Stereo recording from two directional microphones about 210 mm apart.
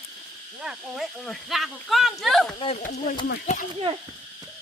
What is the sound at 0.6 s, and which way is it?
Speech, centre (ahead or behind).